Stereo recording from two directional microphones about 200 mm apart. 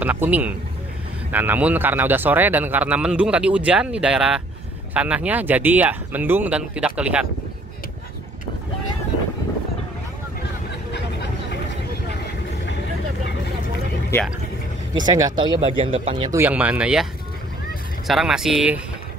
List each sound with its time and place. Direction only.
0.0 s speech: 10° right (ahead or behind)
15.0 s speech: 20° right (ahead or behind)
16.3 s speech: 10° right (ahead or behind)